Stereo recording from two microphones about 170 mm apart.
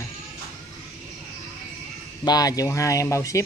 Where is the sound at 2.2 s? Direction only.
20° left (ahead or behind).